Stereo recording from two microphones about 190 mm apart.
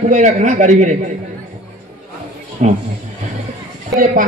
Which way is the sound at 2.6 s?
35° right (ahead or behind).